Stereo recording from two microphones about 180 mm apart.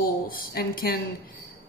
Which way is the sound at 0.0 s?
55° left (ahead or behind).